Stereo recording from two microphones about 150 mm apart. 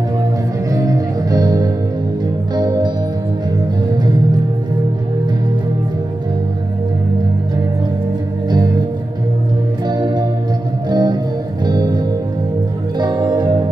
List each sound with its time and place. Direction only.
0.7 s music: 25° right (ahead or behind)
8.5 s music: 30° right (ahead or behind)
9.8 s music: 30° right (ahead or behind)
13.0 s music: 25° right (ahead or behind)